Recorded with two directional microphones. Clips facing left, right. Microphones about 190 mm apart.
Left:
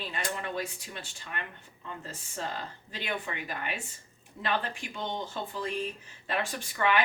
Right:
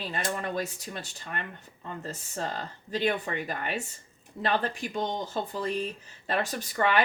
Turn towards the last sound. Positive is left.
turn(degrees=-40)  # may be behind; listen again after turning